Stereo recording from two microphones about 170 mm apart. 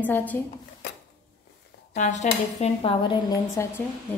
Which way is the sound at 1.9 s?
45° left (ahead or behind).